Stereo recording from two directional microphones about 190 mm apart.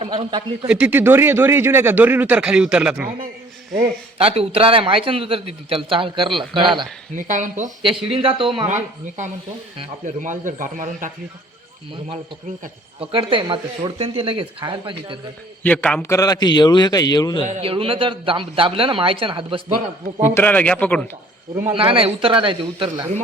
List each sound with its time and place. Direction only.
0.0 s a man's voice: 25° right (ahead or behind)
0.7 s speech: 10° right (ahead or behind)
3.8 s a man's voice: 30° right (ahead or behind)
7.2 s speech: 40° right (ahead or behind)
7.8 s a man's voice: 25° right (ahead or behind)
8.7 s speech: 40° right (ahead or behind)
13.0 s a man's voice: 25° right (ahead or behind)
15.6 s a man's voice: 5° left (ahead or behind)
17.6 s a man's voice: 30° right (ahead or behind)
20.2 s a man's voice: 10° left (ahead or behind)
21.7 s a man's voice: 25° right (ahead or behind)